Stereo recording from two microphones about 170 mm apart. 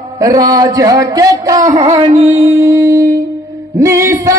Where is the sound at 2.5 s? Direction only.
15° right (ahead or behind).